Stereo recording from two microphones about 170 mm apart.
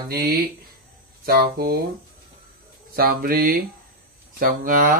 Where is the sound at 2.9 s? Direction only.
60° right (ahead or behind).